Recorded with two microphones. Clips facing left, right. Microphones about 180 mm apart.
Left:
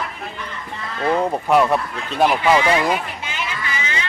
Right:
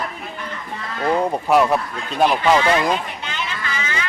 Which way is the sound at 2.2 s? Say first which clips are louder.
Even; 10° left (ahead or behind).